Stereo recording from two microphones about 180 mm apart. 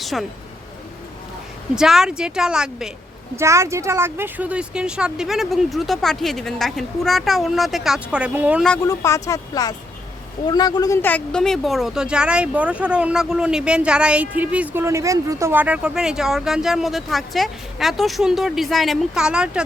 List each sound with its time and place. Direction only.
0.0 s speech: centre (ahead or behind)
1.7 s speech: 5° right (ahead or behind)
3.3 s speech: 15° right (ahead or behind)
8.8 s speech: 20° left (ahead or behind); by 19.6 s 5° right (ahead or behind)